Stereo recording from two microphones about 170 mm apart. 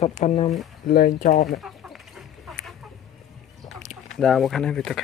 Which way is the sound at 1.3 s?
Centre (ahead or behind).